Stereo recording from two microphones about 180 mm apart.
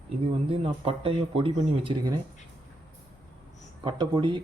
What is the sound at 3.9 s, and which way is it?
Speech, 25° right (ahead or behind).